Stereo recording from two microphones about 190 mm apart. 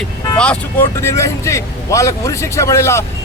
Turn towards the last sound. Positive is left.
turn(degrees=15)  # may be behind; listen again after turning